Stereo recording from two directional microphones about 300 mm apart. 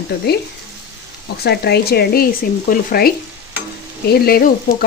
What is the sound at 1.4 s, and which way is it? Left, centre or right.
Speech, left.